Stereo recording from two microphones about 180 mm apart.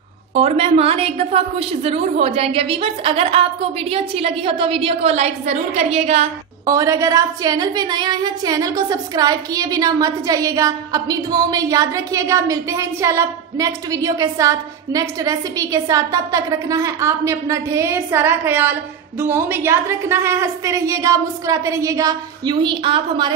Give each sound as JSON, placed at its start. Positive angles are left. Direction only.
{"t": 0.3, "sound": "a woman's voice", "side_deg": -35}
{"t": 6.6, "sound": "a woman's voice", "side_deg": -20}